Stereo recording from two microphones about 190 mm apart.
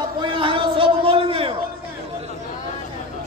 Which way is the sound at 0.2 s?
25° right (ahead or behind).